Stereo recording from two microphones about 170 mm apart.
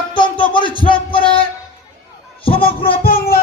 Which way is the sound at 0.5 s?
30° left (ahead or behind).